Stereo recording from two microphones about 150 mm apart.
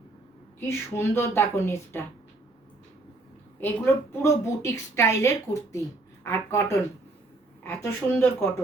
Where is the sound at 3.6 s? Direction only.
15° left (ahead or behind).